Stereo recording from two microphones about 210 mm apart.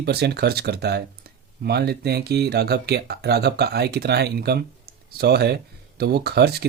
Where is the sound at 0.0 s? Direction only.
50° right (ahead or behind).